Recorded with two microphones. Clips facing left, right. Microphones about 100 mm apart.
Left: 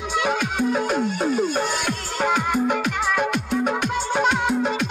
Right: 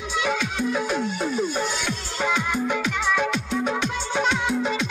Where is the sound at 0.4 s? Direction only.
45° left (ahead or behind).